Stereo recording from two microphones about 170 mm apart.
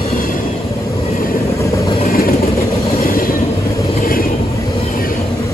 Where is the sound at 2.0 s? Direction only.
60° left (ahead or behind).